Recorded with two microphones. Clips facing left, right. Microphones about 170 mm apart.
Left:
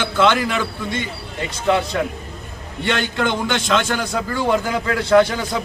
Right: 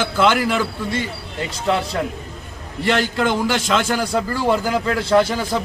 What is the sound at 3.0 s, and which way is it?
A man's voice, 5° right (ahead or behind).